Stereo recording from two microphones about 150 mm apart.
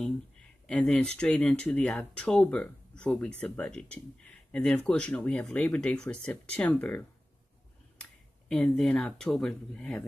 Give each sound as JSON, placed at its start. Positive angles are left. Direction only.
{"t": 0.7, "sound": "speech", "side_deg": 10}